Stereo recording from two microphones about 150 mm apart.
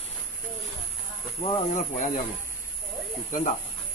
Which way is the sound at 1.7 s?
55° left (ahead or behind).